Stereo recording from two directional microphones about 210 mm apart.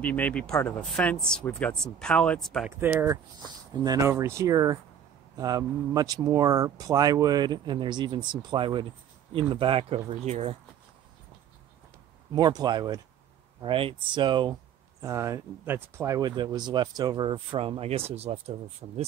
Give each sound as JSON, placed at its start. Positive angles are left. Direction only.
{"t": 0.0, "sound": "speech", "side_deg": 5}
{"t": 2.8, "sound": "speech", "side_deg": -10}
{"t": 12.3, "sound": "speech", "side_deg": -20}